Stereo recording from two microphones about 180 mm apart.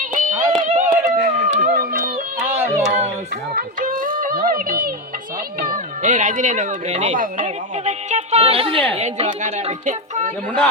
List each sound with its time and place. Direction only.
0.0 s music: 45° right (ahead or behind)
2.8 s a sound: 40° right (ahead or behind)
3.5 s speech: 50° right (ahead or behind)